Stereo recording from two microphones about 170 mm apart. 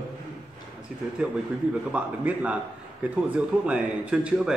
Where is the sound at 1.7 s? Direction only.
5° right (ahead or behind).